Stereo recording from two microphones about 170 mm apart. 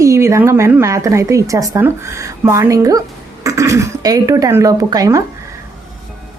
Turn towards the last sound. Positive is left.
turn(degrees=-20)  # may be behind; listen again after turning